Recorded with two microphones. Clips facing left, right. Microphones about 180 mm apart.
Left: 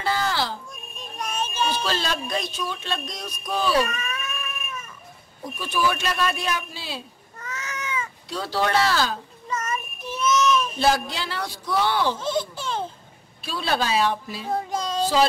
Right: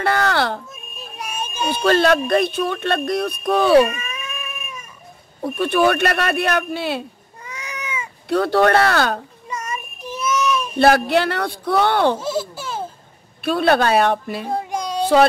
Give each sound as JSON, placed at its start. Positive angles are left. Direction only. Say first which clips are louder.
{"t": 0.0, "sound": "a sound", "louder": "right 6 dB", "side_deg": -65}
{"t": 0.9, "sound": "music", "louder": "even", "side_deg": -10}
{"t": 1.7, "sound": "speech", "louder": "right 11 dB", "side_deg": -60}
{"t": 3.9, "sound": "cat", "louder": "even", "side_deg": -10}
{"t": 5.4, "sound": "speech", "louder": "right 8 dB", "side_deg": -60}
{"t": 7.4, "sound": "cat", "louder": "right 1 dB", "side_deg": -15}
{"t": 8.3, "sound": "speech", "louder": "right 9 dB", "side_deg": -60}
{"t": 9.5, "sound": "child singing", "louder": "even", "side_deg": -10}
{"t": 10.8, "sound": "speech", "louder": "right 8 dB", "side_deg": -65}
{"t": 12.2, "sound": "a sound", "louder": "right 2 dB", "side_deg": -10}
{"t": 13.4, "sound": "speech", "louder": "right 9 dB", "side_deg": -60}
{"t": 14.5, "sound": "child singing", "louder": "right 1 dB", "side_deg": -15}